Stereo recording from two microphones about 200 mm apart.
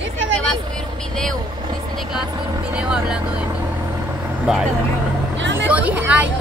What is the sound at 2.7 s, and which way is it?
Speech, 5° right (ahead or behind).